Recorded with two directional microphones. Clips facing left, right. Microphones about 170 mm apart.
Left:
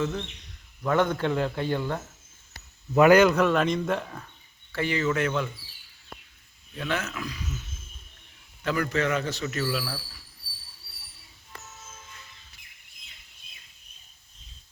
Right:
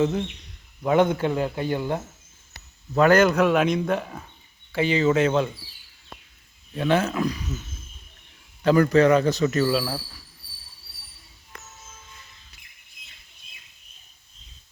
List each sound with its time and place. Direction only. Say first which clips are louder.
0.0 s speech: right 6 dB; 25° right (ahead or behind)
2.9 s a man's voice: even; 10° left (ahead or behind)
3.2 s speech: right 2 dB; 5° right (ahead or behind)
4.7 s speech: right 6 dB; 20° right (ahead or behind)
6.7 s a man's voice: right 9 dB; 30° right (ahead or behind)
8.6 s a man's voice: right 10 dB; 35° right (ahead or behind)